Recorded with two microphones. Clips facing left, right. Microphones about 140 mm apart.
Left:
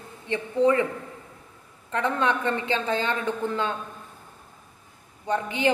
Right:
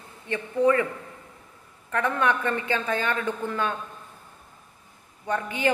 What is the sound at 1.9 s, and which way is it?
A woman's voice, 20° left (ahead or behind).